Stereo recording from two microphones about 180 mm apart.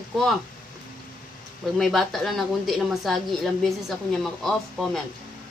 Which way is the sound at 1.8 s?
Centre (ahead or behind).